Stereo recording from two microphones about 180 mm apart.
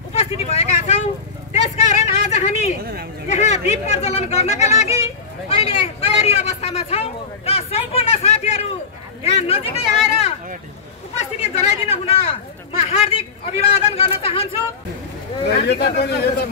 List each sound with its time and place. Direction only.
0.1 s vehicle: 35° left (ahead or behind)
1.5 s a sound: 40° left (ahead or behind)
2.8 s speech: 60° right (ahead or behind)
3.3 s speech: 40° left (ahead or behind)
11.1 s speech: 35° left (ahead or behind)
15.4 s a man's voice: 65° left (ahead or behind)